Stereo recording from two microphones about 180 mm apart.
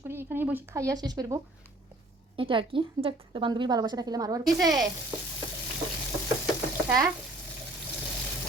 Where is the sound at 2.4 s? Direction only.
30° right (ahead or behind).